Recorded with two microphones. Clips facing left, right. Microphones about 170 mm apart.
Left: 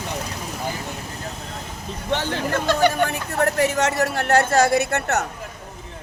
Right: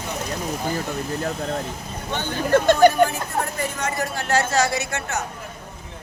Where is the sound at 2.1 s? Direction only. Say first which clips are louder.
Left 4 dB; 90° left.